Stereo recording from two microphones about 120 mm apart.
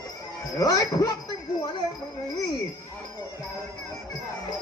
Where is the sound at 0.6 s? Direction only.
30° left (ahead or behind).